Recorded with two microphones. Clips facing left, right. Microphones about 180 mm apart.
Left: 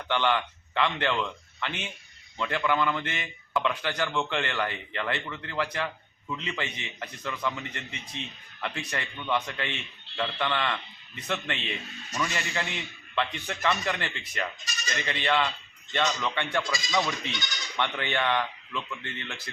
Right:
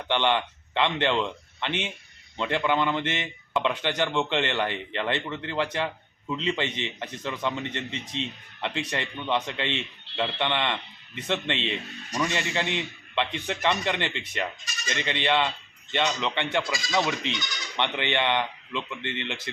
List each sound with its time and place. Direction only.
0.0 s speech: 20° right (ahead or behind)